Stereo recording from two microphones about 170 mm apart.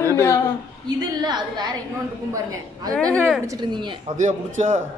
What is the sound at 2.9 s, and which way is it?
Speech, 5° left (ahead or behind).